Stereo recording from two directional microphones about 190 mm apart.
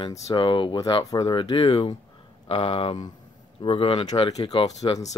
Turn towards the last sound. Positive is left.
turn(degrees=20)  # may be behind; listen again after turning